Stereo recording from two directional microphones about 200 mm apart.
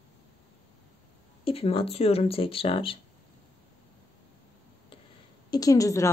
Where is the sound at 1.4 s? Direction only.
30° left (ahead or behind).